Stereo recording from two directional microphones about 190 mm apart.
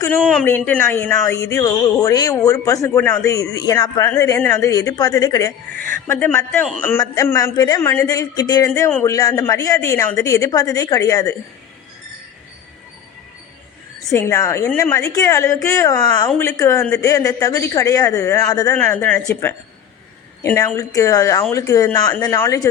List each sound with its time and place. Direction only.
0.1 s speech: centre (ahead or behind)
7.0 s speech: 15° left (ahead or behind)
14.1 s speech: 15° left (ahead or behind)